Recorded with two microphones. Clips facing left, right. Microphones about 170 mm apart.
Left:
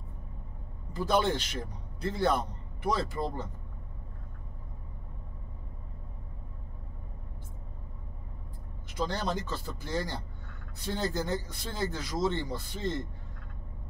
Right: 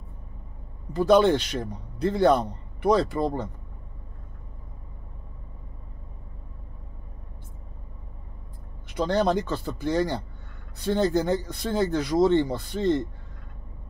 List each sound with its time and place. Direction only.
0.9 s a man's voice: 65° right (ahead or behind)
8.8 s a man's voice: 65° right (ahead or behind)